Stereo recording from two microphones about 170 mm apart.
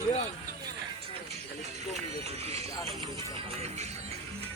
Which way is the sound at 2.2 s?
40° right (ahead or behind).